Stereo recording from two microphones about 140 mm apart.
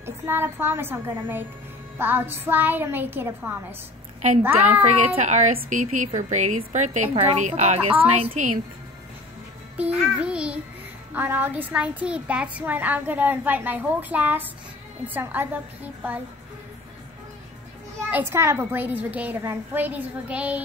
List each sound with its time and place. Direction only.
0.0 s a child's voice: 15° right (ahead or behind)
4.8 s a woman's voice: 60° right (ahead or behind)
9.8 s a child's voice: 10° right (ahead or behind)
18.1 s a child's voice: 15° right (ahead or behind)